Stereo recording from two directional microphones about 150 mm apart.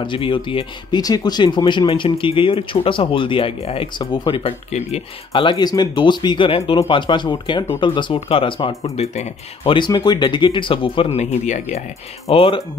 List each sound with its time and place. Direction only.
0.0 s speech: 35° left (ahead or behind)
5.4 s speech: 30° left (ahead or behind)
8.9 s speech: 45° left (ahead or behind)
9.8 s speech: 30° left (ahead or behind); by 11.8 s 50° left (ahead or behind)
12.3 s speech: 35° left (ahead or behind)